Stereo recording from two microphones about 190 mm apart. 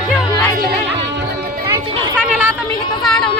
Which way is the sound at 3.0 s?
Centre (ahead or behind).